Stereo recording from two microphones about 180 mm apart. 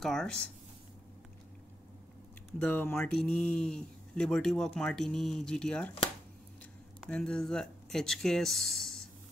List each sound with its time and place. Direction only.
0.0 s speech: centre (ahead or behind)
2.6 s speech: 10° left (ahead or behind)
7.1 s speech: 5° left (ahead or behind)